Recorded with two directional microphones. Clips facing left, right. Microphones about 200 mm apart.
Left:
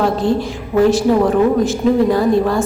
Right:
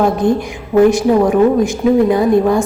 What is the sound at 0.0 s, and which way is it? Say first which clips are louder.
A woman's voice: right 2 dB; 15° right (ahead or behind).